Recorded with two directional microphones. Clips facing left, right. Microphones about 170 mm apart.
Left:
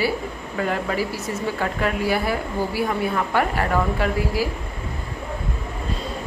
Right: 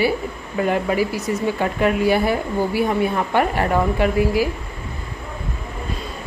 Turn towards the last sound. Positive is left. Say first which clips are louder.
# right 5 dB
turn(degrees=-20)  # may be behind; listen again after turning